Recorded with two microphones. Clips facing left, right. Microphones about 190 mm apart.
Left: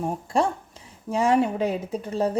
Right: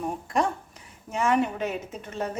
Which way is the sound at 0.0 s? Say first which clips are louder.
Left 3 dB; 30° left (ahead or behind).